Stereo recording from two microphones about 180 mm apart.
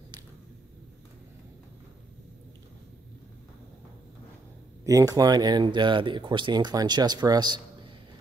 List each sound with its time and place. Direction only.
4.8 s speech: 20° right (ahead or behind)